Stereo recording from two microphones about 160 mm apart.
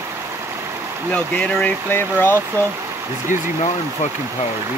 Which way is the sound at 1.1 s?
5° left (ahead or behind).